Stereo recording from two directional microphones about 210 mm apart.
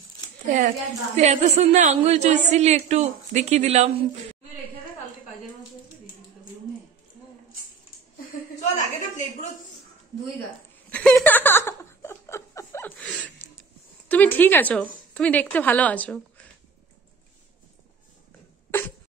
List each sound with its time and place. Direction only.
0.5 s a woman's voice: 35° right (ahead or behind)
10.9 s a sound: 5° left (ahead or behind)
18.7 s cough: 10° left (ahead or behind)